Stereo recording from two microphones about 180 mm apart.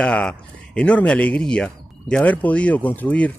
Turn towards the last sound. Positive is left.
turn(degrees=10)  # may be behind; listen again after turning